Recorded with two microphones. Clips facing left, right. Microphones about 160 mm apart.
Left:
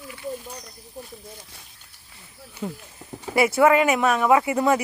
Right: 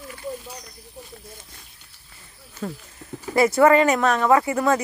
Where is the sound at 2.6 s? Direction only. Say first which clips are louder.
Even; 15° left (ahead or behind).